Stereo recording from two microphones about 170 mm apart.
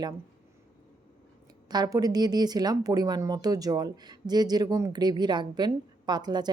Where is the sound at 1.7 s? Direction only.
25° right (ahead or behind).